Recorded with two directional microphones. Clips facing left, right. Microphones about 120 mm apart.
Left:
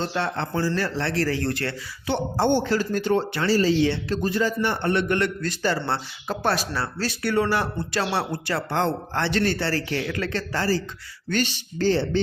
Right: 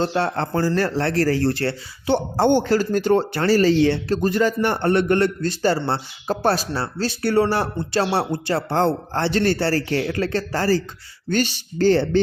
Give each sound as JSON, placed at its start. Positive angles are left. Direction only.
{"t": 0.0, "sound": "speech", "side_deg": -40}